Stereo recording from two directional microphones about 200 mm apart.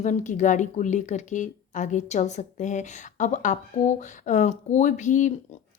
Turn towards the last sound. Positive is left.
turn(degrees=40)  # may be behind; listen again after turning